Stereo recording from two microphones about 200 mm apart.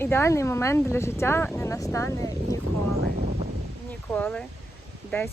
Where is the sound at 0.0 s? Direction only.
10° left (ahead or behind).